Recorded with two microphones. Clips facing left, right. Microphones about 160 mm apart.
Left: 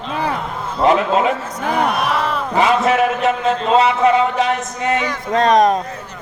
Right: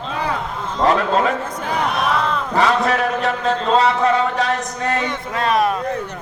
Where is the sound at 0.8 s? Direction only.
10° left (ahead or behind).